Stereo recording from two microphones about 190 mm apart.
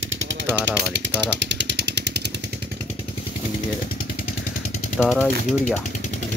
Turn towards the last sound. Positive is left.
turn(degrees=0)  # may be behind; listen again after turning